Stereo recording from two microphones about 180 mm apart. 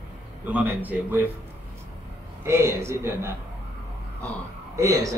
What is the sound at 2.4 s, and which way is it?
Speech, 15° right (ahead or behind).